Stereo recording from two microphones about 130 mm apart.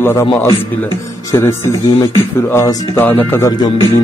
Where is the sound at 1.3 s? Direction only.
20° left (ahead or behind).